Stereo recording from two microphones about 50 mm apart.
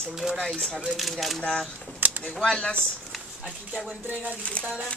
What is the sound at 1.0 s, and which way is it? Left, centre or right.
Speech, centre.